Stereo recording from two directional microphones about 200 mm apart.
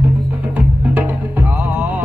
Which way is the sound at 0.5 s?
10° right (ahead or behind).